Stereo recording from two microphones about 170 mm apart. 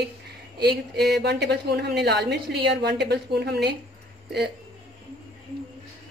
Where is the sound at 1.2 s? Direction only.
85° right.